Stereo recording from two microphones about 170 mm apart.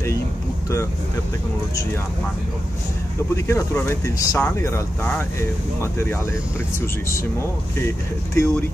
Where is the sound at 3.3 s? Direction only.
15° left (ahead or behind).